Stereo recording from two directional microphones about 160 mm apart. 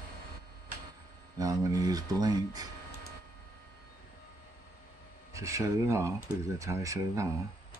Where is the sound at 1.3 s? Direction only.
20° right (ahead or behind).